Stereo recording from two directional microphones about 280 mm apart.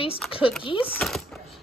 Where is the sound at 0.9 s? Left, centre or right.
Centre.